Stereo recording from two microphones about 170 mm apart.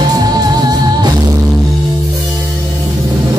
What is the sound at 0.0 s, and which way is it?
Music, 20° right (ahead or behind).